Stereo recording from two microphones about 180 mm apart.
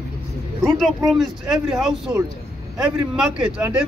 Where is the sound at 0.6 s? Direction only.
Centre (ahead or behind).